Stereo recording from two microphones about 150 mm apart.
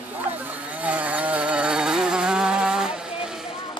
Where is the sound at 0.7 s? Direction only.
10° right (ahead or behind).